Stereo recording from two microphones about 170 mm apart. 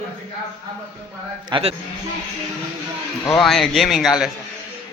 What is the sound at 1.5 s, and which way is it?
Speech, 35° right (ahead or behind).